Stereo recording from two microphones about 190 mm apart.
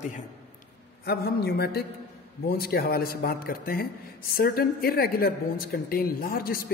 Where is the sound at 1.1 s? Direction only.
55° left (ahead or behind).